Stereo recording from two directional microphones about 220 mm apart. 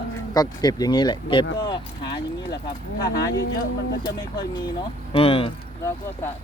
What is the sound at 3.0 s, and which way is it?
Speech, 50° left (ahead or behind).